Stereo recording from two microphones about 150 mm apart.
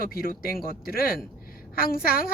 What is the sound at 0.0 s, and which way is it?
A woman's voice, 80° left.